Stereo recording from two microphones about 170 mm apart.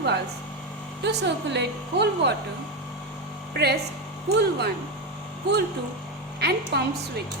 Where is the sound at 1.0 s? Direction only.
90° right.